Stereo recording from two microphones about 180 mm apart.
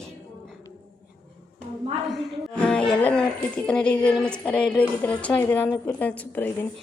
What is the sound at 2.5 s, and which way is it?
Speech, 5° left (ahead or behind).